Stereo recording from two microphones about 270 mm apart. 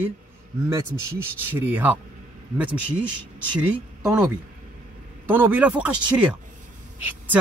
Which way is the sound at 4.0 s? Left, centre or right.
Centre.